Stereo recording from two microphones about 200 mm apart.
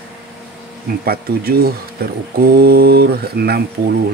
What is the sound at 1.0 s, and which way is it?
Speech, 50° right (ahead or behind).